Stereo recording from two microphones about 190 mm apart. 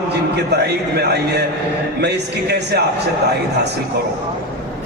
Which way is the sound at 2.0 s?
60° right (ahead or behind).